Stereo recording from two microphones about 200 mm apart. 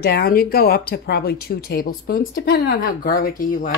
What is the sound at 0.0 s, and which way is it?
Speech, 50° left (ahead or behind).